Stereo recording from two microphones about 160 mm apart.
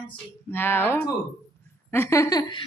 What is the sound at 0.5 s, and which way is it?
A child's voice, 15° left (ahead or behind).